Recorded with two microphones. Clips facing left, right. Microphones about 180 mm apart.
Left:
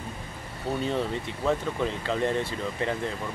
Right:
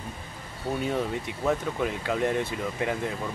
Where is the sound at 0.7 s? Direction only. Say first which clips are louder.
Even; 10° right (ahead or behind).